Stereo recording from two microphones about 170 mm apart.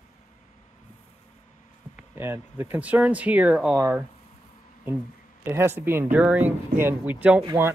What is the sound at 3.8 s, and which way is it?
Speech, 15° right (ahead or behind).